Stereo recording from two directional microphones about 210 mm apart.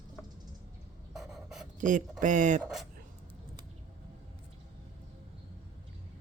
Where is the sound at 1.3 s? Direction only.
Centre (ahead or behind).